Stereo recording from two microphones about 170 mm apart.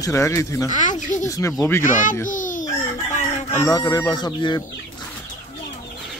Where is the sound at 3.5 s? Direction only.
20° left (ahead or behind).